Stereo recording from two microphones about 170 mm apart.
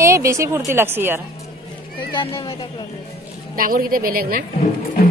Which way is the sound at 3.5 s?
55° right (ahead or behind).